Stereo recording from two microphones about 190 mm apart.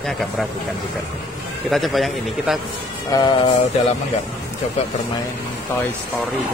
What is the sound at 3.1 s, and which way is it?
Speech, 20° left (ahead or behind).